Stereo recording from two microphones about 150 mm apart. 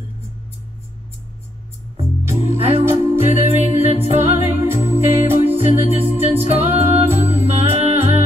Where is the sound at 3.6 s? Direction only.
40° right (ahead or behind).